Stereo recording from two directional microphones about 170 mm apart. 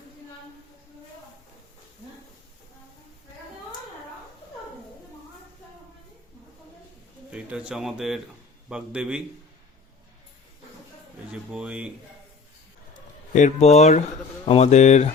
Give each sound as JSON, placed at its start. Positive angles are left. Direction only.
{"t": 7.3, "sound": "speech", "side_deg": -5}
{"t": 11.3, "sound": "speech", "side_deg": -5}
{"t": 13.3, "sound": "speech", "side_deg": 45}